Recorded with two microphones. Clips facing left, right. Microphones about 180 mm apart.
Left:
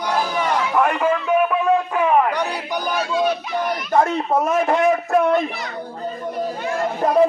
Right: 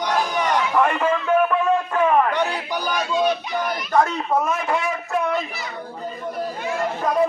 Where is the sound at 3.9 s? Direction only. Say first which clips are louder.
Left 2 dB; 25° left (ahead or behind).